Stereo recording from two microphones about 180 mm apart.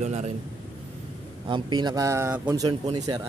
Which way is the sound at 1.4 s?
25° right (ahead or behind).